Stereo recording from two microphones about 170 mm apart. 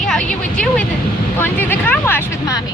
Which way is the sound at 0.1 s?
5° left (ahead or behind).